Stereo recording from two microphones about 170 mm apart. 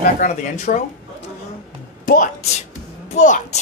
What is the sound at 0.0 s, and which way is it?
Speech, 50° left (ahead or behind).